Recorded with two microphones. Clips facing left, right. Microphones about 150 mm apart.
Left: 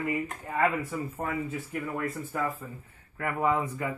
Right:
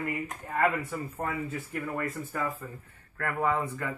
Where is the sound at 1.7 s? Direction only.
5° left (ahead or behind).